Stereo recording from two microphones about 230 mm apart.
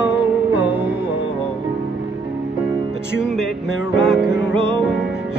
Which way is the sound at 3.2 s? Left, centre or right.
Centre.